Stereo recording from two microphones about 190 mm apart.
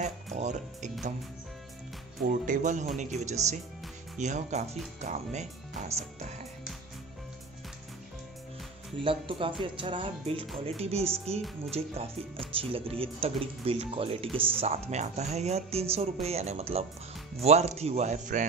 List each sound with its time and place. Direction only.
0.0 s speech: 35° right (ahead or behind)
2.2 s speech: 40° right (ahead or behind)
9.0 s speech: 25° right (ahead or behind)